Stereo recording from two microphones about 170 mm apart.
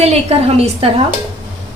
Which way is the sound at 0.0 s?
35° right (ahead or behind).